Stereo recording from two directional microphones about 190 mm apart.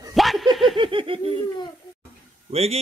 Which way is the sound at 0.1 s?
Centre (ahead or behind).